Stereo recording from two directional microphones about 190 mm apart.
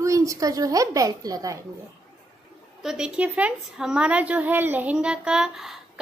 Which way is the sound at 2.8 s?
5° right (ahead or behind).